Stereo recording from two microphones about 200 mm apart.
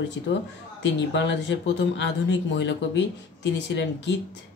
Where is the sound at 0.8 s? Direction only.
65° left (ahead or behind).